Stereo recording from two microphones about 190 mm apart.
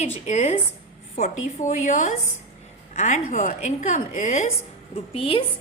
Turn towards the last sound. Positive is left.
turn(degrees=30)  # may be behind; listen again after turning